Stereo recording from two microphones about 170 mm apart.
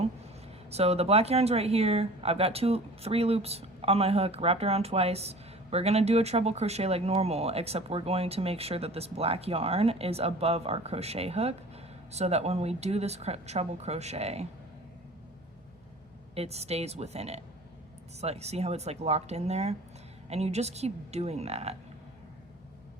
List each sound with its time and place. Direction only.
0.7 s speech: 35° right (ahead or behind)
16.3 s speech: 35° right (ahead or behind)